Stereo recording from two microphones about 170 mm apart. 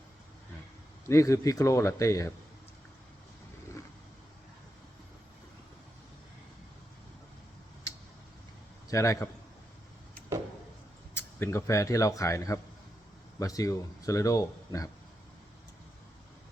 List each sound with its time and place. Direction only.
1.0 s a man's voice: 15° left (ahead or behind)
8.9 s a man's voice: 20° left (ahead or behind)
11.1 s speech: 15° left (ahead or behind)